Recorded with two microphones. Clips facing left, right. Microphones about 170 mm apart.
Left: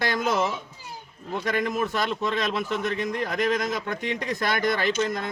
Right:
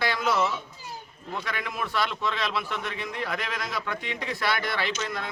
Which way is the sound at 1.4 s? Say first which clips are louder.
Left 9 dB; 45° left (ahead or behind).